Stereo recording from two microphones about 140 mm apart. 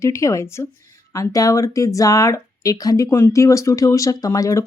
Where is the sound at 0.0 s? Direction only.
20° left (ahead or behind).